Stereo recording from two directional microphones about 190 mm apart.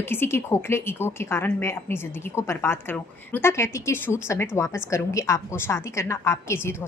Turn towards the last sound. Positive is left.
turn(degrees=15)  # may be behind; listen again after turning